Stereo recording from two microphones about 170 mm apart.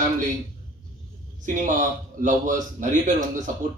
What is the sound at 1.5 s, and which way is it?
A man's voice, 50° right (ahead or behind).